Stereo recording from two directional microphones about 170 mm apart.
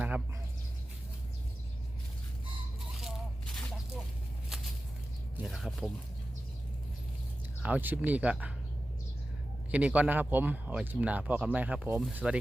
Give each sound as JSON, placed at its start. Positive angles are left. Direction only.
{"t": 3.0, "sound": "a sound", "side_deg": 5}
{"t": 5.4, "sound": "speech", "side_deg": 0}
{"t": 7.6, "sound": "speech", "side_deg": -10}
{"t": 9.7, "sound": "speech", "side_deg": -10}